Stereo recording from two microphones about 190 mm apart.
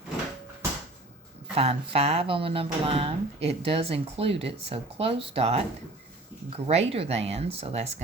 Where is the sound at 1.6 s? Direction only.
30° right (ahead or behind).